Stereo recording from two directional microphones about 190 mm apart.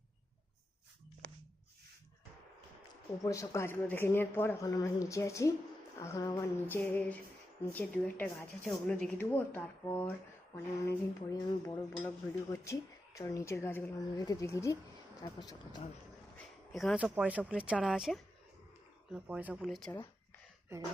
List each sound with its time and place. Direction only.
1.2 s a sound: 50° right (ahead or behind)
3.2 s speech: 15° left (ahead or behind)
16.7 s speech: centre (ahead or behind)
20.7 s speech: 15° right (ahead or behind)